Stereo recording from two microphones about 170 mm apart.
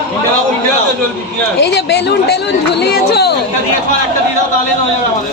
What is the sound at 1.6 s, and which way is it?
Speech, 80° left.